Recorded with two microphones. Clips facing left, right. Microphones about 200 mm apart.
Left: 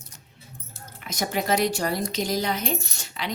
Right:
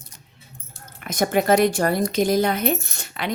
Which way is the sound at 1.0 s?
55° right (ahead or behind).